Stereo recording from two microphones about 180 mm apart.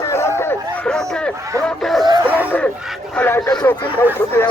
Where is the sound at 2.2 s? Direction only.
10° right (ahead or behind).